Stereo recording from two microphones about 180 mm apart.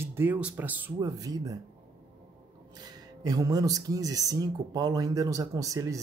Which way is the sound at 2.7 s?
20° right (ahead or behind).